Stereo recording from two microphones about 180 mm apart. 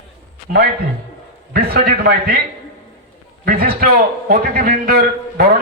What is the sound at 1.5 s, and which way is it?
Speech, 65° right (ahead or behind).